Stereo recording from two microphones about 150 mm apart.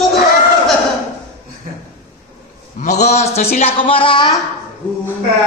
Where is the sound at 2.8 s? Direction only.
50° left (ahead or behind).